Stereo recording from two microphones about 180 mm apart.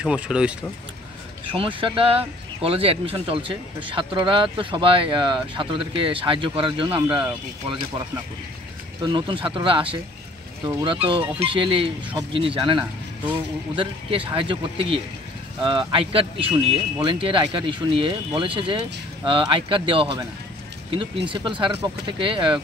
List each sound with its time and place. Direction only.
0.0 s speech: 5° right (ahead or behind)
1.5 s speech: 30° right (ahead or behind)
9.0 s speech: 25° right (ahead or behind)